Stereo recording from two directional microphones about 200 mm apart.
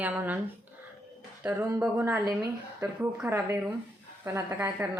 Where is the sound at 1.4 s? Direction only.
10° right (ahead or behind).